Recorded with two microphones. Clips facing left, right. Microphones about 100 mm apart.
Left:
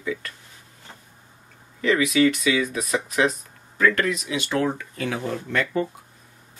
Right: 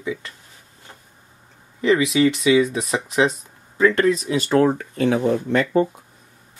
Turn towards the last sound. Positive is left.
turn(degrees=-30)  # may be behind; listen again after turning